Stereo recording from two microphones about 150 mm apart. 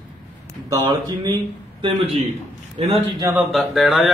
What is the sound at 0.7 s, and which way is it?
Speech, 25° right (ahead or behind).